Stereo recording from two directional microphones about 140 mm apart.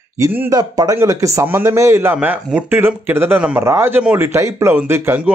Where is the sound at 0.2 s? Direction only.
20° right (ahead or behind).